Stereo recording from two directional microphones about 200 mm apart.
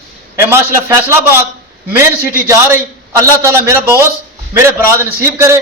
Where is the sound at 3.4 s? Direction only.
15° right (ahead or behind).